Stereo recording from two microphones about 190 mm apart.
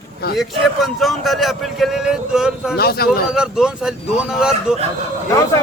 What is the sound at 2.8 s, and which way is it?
Speech, 55° left (ahead or behind).